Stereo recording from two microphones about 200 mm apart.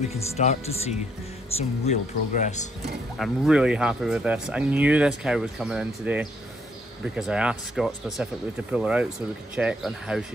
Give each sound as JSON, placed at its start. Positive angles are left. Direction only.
{"t": 0.1, "sound": "speech", "side_deg": 35}
{"t": 3.2, "sound": "speech", "side_deg": -5}